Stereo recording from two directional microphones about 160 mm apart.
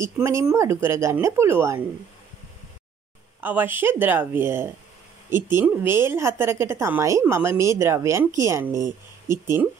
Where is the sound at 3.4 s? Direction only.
10° right (ahead or behind).